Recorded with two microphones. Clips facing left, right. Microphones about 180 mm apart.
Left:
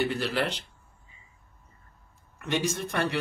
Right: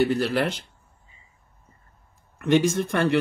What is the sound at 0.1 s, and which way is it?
Speech, 45° right (ahead or behind).